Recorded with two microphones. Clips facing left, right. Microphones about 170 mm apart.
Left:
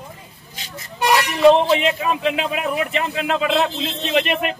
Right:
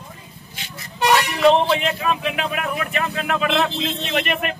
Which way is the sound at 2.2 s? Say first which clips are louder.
Left 3 dB; 20° left (ahead or behind).